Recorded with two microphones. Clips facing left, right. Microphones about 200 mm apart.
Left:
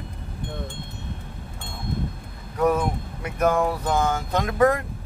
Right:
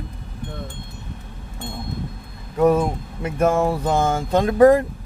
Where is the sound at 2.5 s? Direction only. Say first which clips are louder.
Right 5 dB; 25° right (ahead or behind).